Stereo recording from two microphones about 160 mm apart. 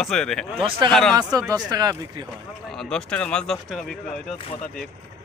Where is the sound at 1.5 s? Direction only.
25° right (ahead or behind).